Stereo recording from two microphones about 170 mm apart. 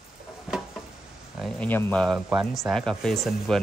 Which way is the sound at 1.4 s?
10° left (ahead or behind).